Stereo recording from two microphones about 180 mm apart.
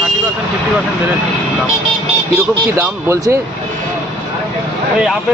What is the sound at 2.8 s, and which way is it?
Speech, 15° right (ahead or behind).